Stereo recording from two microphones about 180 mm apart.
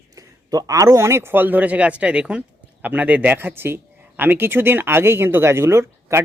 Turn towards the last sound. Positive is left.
turn(degrees=-15)  # may be behind; listen again after turning